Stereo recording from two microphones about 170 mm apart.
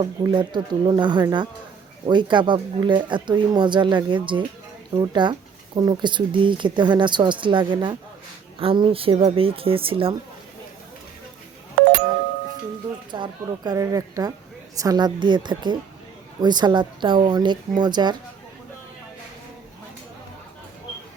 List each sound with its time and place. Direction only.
0.0 s speech: 25° right (ahead or behind)
13.1 s speech: 25° right (ahead or behind)